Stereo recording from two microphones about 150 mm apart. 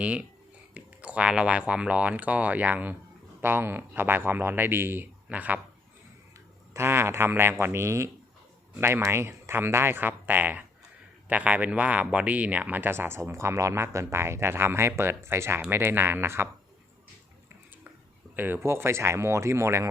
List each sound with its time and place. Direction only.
0.0 s speech: 10° right (ahead or behind)
6.7 s speech: 15° right (ahead or behind)
18.3 s speech: 15° right (ahead or behind)